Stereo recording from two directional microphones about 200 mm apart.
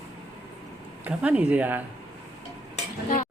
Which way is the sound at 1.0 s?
5° right (ahead or behind).